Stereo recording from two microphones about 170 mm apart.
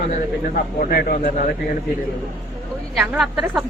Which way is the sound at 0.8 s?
60° left (ahead or behind).